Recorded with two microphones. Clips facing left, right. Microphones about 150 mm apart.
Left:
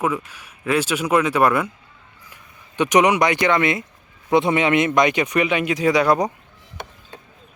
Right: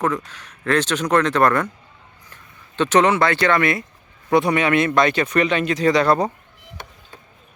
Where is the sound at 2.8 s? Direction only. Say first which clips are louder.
Even; 15° left (ahead or behind).